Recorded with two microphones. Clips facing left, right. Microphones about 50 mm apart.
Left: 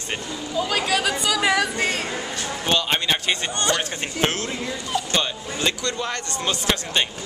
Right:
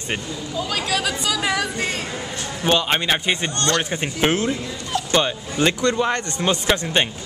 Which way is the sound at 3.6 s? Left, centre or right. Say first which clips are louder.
Right 1 dB; centre.